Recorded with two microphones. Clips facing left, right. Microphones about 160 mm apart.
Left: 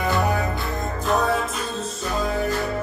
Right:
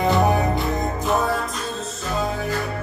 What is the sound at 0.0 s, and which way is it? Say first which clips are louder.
Music: right 4 dB; 20° right (ahead or behind).